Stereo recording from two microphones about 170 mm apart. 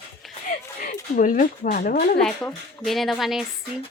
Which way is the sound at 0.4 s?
50° left (ahead or behind).